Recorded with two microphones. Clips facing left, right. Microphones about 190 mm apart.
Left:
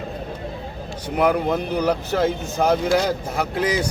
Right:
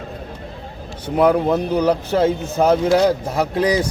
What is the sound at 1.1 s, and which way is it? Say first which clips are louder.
Speech: right 4 dB; 30° right (ahead or behind).